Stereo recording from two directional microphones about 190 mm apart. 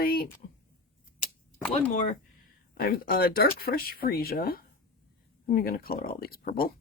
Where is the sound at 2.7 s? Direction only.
50° left (ahead or behind).